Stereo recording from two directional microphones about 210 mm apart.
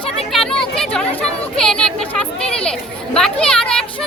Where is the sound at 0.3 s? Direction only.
5° left (ahead or behind).